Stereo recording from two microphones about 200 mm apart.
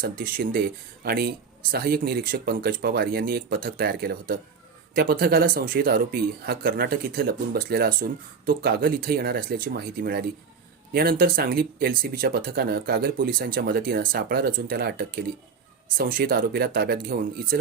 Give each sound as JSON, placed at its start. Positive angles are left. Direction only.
{"t": 0.0, "sound": "speech", "side_deg": -50}